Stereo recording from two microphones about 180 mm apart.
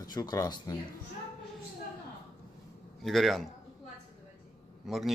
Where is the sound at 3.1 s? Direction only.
Centre (ahead or behind).